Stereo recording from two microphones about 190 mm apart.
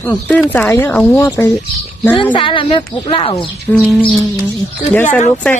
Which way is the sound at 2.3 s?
25° left (ahead or behind).